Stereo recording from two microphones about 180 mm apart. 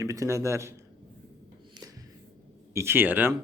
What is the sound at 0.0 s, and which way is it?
Speech, 15° right (ahead or behind).